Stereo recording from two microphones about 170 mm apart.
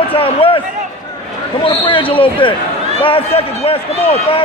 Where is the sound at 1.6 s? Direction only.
30° left (ahead or behind).